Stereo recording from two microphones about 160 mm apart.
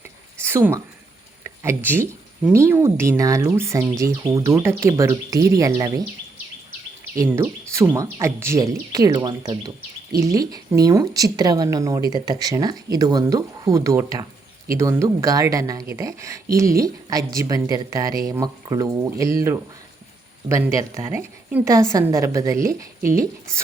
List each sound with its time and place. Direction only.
0.3 s a sound: 15° right (ahead or behind)
1.5 s speech: 15° right (ahead or behind)
7.2 s speech: 15° right (ahead or behind)